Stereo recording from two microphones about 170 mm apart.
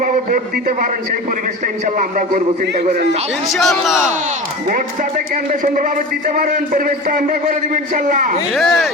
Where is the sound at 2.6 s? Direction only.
70° right (ahead or behind).